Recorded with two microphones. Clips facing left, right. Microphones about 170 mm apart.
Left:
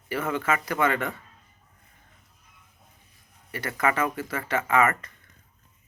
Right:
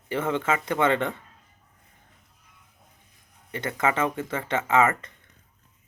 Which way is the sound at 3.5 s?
20° right (ahead or behind).